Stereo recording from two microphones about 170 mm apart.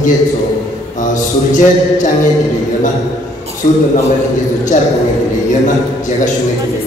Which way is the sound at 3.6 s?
50° left (ahead or behind).